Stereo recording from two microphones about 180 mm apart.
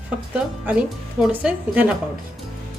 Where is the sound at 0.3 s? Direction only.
10° right (ahead or behind).